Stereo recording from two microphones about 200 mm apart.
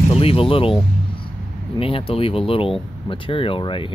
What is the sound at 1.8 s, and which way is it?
Speech, 30° left (ahead or behind).